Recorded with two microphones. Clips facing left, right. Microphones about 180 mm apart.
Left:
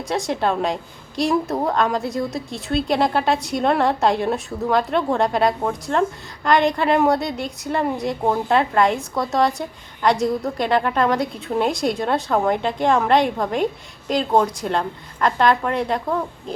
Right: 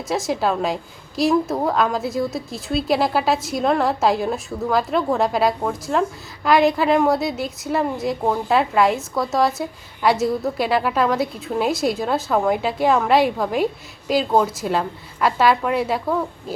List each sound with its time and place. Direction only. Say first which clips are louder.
0.0 s a woman's voice: even; centre (ahead or behind)